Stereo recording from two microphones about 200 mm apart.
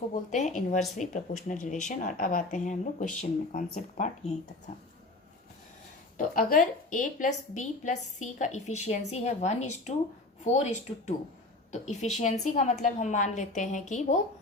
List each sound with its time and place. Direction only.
0.1 s a woman's voice: 35° left (ahead or behind)
6.1 s a woman's voice: 45° left (ahead or behind)